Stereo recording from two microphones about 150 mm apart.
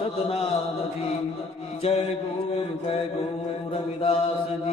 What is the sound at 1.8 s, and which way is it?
Mantra, 45° left (ahead or behind).